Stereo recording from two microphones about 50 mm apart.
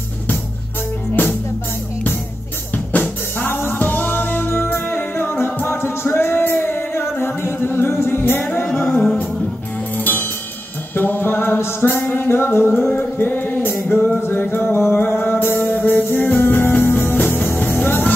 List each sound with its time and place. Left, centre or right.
2.7 s drum kit: left
3.7 s music: left
9.9 s music: left